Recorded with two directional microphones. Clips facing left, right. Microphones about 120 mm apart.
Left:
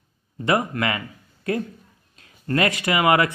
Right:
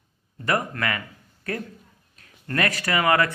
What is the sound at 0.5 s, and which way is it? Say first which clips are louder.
Speech: left 3 dB; 20° left (ahead or behind).